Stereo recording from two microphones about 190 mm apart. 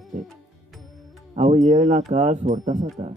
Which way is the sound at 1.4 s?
35° right (ahead or behind).